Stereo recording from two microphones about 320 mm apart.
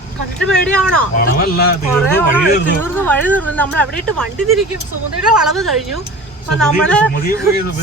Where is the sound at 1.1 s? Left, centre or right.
Left.